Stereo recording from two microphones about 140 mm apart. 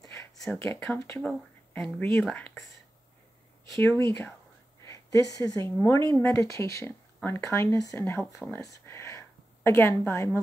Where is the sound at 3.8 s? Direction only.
20° left (ahead or behind).